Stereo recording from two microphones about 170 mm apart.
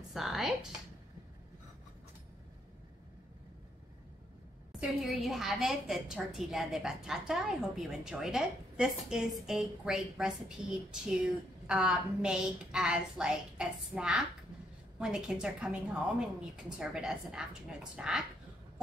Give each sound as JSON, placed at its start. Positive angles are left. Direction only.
{"t": 0.1, "sound": "a woman's voice", "side_deg": 0}
{"t": 4.7, "sound": "a woman's voice", "side_deg": -5}